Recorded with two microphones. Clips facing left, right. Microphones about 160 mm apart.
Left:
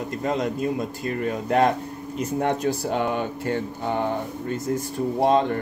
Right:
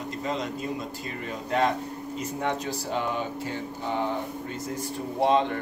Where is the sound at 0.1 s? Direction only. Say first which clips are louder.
Left 5 dB; 55° left (ahead or behind).